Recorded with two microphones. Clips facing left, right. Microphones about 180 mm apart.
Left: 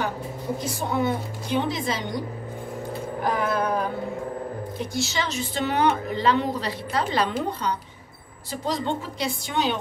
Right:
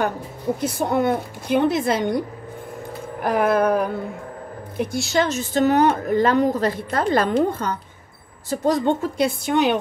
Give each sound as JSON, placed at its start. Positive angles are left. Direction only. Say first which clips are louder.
{"t": 0.6, "sound": "a woman's voice", "louder": "right 5 dB", "side_deg": -55}
{"t": 3.3, "sound": "a woman's voice", "louder": "right 7 dB", "side_deg": -60}